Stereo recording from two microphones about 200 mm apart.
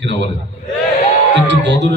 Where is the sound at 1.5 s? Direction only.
60° right (ahead or behind).